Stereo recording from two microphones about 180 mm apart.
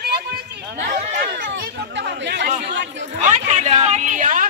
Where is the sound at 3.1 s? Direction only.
40° right (ahead or behind).